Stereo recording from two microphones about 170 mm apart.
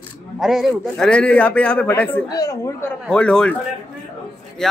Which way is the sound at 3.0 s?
5° left (ahead or behind).